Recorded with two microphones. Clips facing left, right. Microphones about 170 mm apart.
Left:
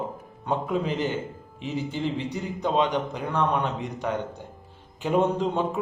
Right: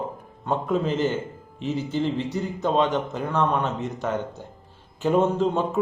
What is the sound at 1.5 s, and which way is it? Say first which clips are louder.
Speech: right 4 dB; 15° left (ahead or behind).